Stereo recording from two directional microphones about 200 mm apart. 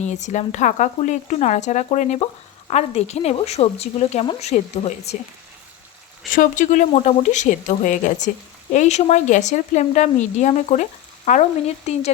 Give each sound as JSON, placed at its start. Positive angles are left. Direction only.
{"t": 0.0, "sound": "speech", "side_deg": 35}
{"t": 6.3, "sound": "speech", "side_deg": 40}